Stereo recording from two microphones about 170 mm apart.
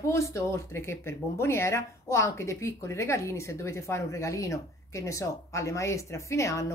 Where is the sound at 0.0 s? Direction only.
15° left (ahead or behind).